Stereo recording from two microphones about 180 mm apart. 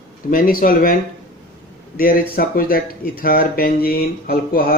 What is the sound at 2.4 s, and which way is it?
Speech, 55° left (ahead or behind).